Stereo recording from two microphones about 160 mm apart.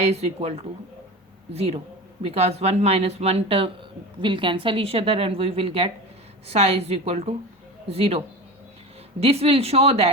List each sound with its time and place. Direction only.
0.0 s a woman's voice: 40° right (ahead or behind)
9.2 s a woman's voice: 40° right (ahead or behind)